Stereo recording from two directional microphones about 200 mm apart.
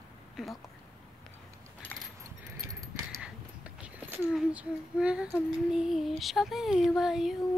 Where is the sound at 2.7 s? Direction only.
15° right (ahead or behind).